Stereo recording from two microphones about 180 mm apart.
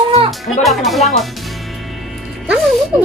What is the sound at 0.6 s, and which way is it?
Speech, centre (ahead or behind).